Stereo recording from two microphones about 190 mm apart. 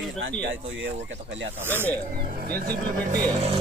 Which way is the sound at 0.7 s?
80° right.